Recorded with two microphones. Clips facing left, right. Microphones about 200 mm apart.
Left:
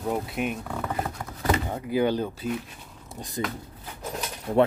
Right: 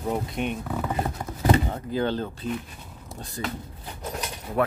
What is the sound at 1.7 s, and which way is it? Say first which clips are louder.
Speech: left 2 dB; 10° left (ahead or behind).